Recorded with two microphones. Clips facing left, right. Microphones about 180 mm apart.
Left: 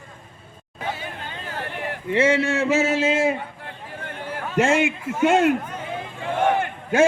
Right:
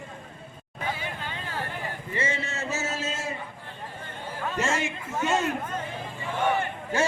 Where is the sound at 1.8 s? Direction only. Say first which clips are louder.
Left 14 dB; 75° left (ahead or behind).